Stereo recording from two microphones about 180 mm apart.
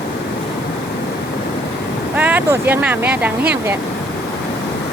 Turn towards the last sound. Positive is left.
turn(degrees=-10)  # may be behind; listen again after turning